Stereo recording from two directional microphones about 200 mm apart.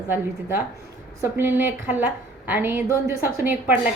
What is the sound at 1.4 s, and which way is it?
A woman's voice, 10° right (ahead or behind).